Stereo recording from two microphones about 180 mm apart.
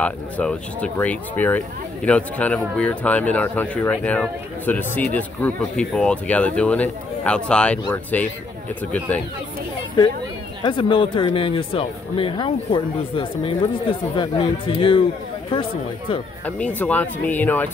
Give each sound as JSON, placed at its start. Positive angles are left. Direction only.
{"t": 0.0, "sound": "a man's voice", "side_deg": 5}
{"t": 10.6, "sound": "speech", "side_deg": 25}
{"t": 16.4, "sound": "a man's voice", "side_deg": 10}